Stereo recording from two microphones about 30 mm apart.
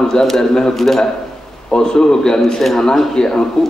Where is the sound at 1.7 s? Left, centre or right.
Left.